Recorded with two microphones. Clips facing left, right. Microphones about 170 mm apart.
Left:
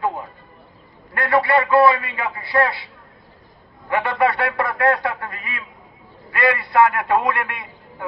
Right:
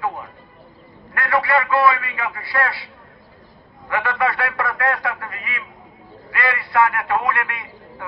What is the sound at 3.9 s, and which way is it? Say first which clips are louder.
A man's voice: left 2 dB; 25° left (ahead or behind).